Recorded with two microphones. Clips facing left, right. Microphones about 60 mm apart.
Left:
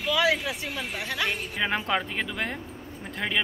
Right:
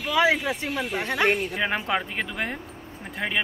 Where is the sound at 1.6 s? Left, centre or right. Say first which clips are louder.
Right 1 dB; centre.